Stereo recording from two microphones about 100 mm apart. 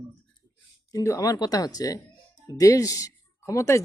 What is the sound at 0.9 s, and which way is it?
Speech, 35° left (ahead or behind).